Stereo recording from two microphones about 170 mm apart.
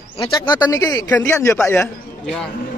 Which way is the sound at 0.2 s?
25° left (ahead or behind).